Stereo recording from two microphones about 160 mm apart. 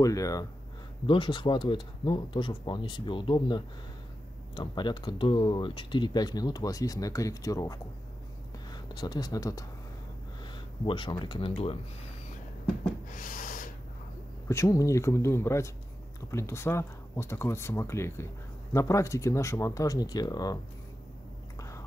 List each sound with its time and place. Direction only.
0.0 s speech: 20° left (ahead or behind)
8.8 s speech: 25° left (ahead or behind)
13.1 s a sound: 55° left (ahead or behind)
14.5 s speech: 20° left (ahead or behind)
21.5 s chewing: 20° left (ahead or behind)